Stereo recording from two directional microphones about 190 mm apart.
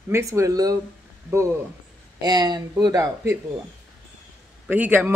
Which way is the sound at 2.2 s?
20° right (ahead or behind).